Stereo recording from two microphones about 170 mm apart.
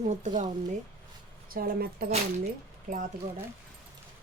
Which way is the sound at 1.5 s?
65° right (ahead or behind).